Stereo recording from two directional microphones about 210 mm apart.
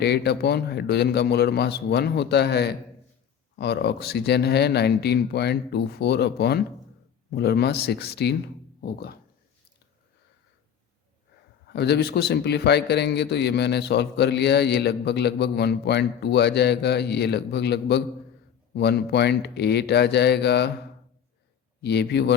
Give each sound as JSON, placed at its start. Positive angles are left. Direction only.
{"t": 0.0, "sound": "a man's voice", "side_deg": 50}
{"t": 11.6, "sound": "a man's voice", "side_deg": 50}
{"t": 21.8, "sound": "a man's voice", "side_deg": 55}